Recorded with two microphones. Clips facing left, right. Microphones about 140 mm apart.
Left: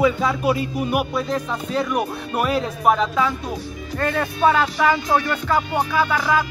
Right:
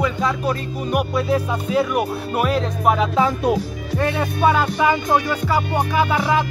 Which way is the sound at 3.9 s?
15° right (ahead or behind).